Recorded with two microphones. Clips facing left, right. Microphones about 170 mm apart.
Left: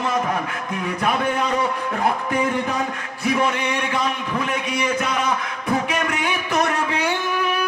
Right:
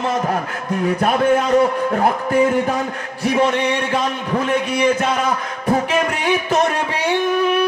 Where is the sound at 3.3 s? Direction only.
35° right (ahead or behind).